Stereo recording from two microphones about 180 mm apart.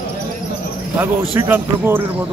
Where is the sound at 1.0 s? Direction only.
10° right (ahead or behind).